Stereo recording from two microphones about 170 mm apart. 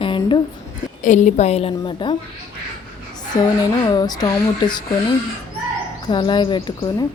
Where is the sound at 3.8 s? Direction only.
25° left (ahead or behind).